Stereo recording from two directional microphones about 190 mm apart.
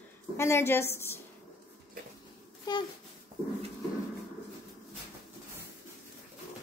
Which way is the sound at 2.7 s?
25° left (ahead or behind).